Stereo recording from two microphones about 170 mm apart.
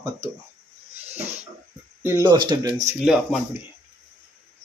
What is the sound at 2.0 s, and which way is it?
Speech, 20° right (ahead or behind).